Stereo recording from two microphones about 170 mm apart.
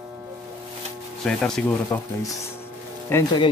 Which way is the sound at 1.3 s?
5° left (ahead or behind).